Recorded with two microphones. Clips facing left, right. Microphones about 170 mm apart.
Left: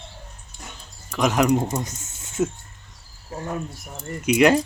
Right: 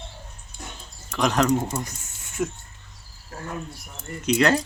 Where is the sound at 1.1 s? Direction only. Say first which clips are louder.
Left 2 dB; 10° left (ahead or behind); by 2.5 s 25° left (ahead or behind).